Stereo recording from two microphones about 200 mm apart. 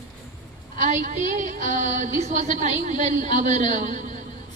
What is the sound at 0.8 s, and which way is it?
A woman's voice, 40° right (ahead or behind).